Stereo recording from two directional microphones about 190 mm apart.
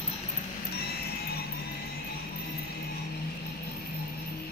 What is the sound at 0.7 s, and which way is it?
Music, 55° left (ahead or behind).